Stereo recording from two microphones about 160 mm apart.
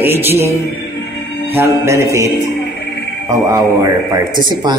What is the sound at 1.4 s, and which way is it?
Speech, 15° right (ahead or behind).